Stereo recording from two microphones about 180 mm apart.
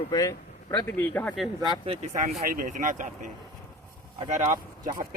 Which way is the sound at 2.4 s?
50° right (ahead or behind).